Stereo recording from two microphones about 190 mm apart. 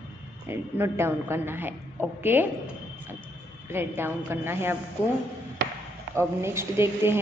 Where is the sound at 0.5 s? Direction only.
15° right (ahead or behind).